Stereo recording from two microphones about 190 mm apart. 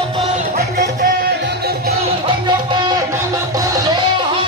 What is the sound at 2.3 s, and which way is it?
Music, 25° right (ahead or behind).